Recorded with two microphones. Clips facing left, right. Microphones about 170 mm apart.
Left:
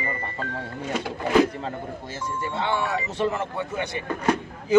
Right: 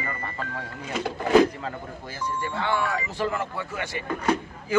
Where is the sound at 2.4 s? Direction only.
20° left (ahead or behind).